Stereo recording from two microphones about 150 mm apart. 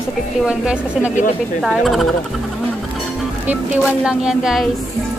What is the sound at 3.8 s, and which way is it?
Speech, 5° right (ahead or behind).